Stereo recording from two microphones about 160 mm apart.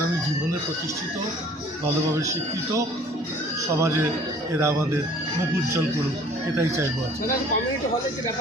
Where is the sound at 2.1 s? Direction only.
20° right (ahead or behind).